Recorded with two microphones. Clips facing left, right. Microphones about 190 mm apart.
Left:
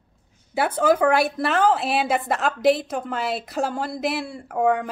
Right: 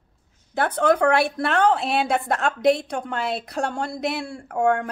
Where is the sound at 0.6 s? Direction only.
10° left (ahead or behind).